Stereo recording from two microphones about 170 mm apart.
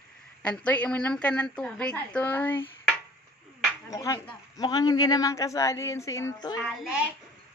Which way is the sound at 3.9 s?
20° left (ahead or behind).